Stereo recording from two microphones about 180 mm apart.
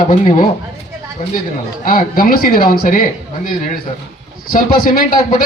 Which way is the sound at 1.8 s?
50° left (ahead or behind).